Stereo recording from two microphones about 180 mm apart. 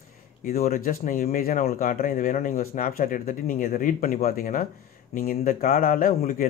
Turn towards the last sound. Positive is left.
turn(degrees=50)  # may be behind; listen again after turning